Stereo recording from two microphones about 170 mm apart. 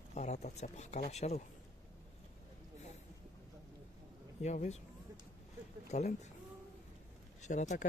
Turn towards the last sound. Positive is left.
turn(degrees=45)  # may be behind; listen again after turning